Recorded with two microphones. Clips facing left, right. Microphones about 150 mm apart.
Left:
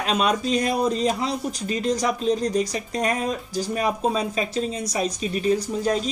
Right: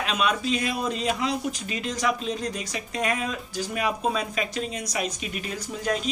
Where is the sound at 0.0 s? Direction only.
35° left (ahead or behind).